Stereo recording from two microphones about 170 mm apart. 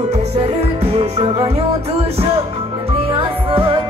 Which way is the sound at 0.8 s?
35° right (ahead or behind).